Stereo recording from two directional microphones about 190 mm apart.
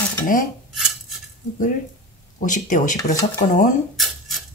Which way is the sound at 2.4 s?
40° left (ahead or behind).